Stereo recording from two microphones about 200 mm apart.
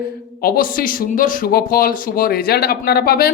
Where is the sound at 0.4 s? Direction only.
45° left (ahead or behind).